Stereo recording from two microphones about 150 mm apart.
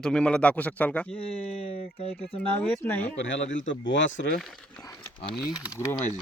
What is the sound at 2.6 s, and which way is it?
Speech, 15° left (ahead or behind).